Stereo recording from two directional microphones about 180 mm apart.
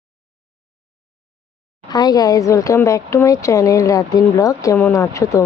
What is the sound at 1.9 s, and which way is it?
Speech, 20° left (ahead or behind).